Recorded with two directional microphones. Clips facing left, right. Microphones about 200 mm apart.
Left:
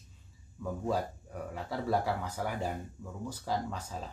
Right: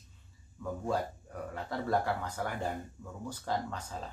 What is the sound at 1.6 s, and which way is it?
Speech, 10° left (ahead or behind).